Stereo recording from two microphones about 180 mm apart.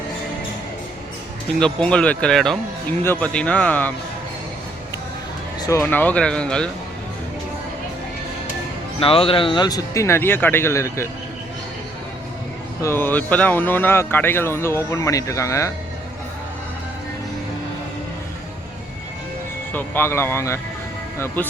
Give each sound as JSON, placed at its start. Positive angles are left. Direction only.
{"t": 1.5, "sound": "speech", "side_deg": 5}
{"t": 5.6, "sound": "speech", "side_deg": 15}
{"t": 9.0, "sound": "speech", "side_deg": 30}
{"t": 12.8, "sound": "speech", "side_deg": 10}
{"t": 19.7, "sound": "speech", "side_deg": 10}